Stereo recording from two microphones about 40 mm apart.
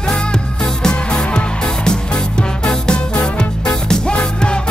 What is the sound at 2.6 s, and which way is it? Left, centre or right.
Music, left.